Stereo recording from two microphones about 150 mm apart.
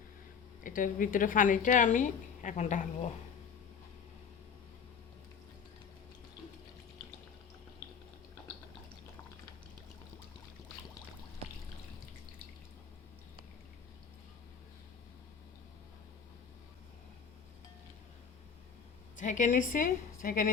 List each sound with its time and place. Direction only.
0.6 s a woman's voice: 65° left (ahead or behind)
19.1 s a woman's voice: 55° left (ahead or behind)